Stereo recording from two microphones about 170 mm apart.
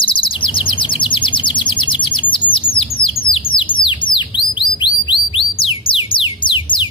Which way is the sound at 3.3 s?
30° left (ahead or behind).